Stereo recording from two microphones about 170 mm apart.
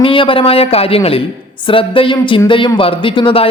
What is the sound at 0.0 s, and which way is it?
A man's voice, 30° left (ahead or behind).